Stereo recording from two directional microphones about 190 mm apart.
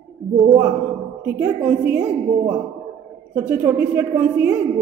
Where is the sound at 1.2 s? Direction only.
10° right (ahead or behind).